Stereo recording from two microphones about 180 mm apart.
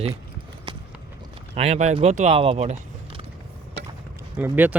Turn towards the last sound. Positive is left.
turn(degrees=-10)  # may be behind; listen again after turning